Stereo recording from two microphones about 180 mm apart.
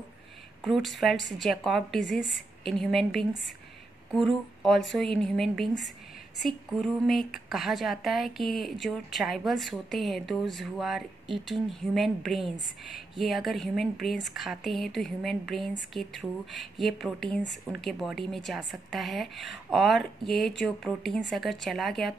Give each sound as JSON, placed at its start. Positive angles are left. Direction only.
{"t": 0.7, "sound": "speech", "side_deg": 0}